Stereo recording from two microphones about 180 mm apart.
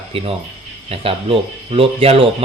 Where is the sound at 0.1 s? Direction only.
30° right (ahead or behind).